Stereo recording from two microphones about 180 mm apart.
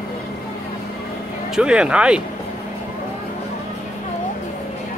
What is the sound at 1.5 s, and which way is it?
Speech, 5° right (ahead or behind).